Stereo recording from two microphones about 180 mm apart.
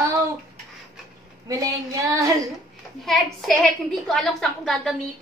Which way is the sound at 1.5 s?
20° right (ahead or behind).